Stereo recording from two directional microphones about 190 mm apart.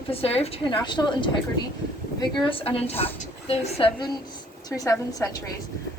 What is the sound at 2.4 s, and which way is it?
A woman's voice, 30° left (ahead or behind).